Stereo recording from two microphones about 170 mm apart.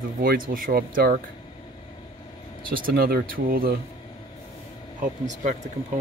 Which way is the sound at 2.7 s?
60° right (ahead or behind).